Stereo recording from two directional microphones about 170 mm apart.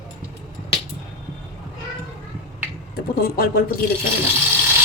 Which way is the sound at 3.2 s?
65° left (ahead or behind).